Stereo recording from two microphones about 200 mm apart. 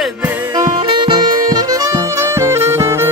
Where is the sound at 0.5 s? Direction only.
20° right (ahead or behind).